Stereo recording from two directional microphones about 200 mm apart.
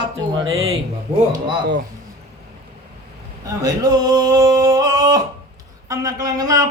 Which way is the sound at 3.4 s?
20° right (ahead or behind).